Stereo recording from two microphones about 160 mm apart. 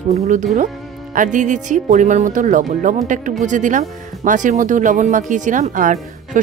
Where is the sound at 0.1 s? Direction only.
50° right (ahead or behind).